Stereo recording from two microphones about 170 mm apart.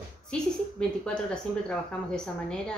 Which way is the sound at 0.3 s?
5° left (ahead or behind).